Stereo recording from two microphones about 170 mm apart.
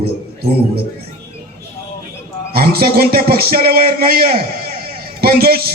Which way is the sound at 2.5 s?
60° right (ahead or behind).